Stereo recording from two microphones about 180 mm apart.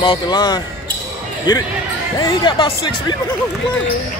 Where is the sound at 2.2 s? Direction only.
25° left (ahead or behind).